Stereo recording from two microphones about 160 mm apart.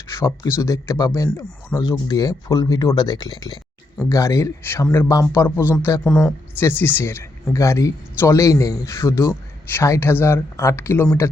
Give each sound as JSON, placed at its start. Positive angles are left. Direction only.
{"t": 0.2, "sound": "speech", "side_deg": 15}